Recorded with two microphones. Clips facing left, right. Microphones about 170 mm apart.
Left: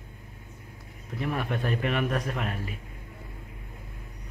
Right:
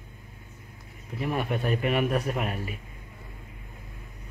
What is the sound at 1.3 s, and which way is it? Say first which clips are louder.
Speech: right 3 dB; 5° right (ahead or behind).